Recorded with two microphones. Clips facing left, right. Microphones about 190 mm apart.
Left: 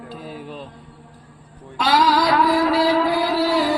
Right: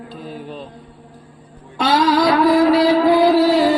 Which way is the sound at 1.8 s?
25° right (ahead or behind).